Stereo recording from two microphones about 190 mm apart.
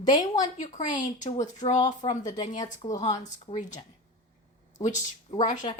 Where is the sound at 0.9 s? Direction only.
40° left (ahead or behind).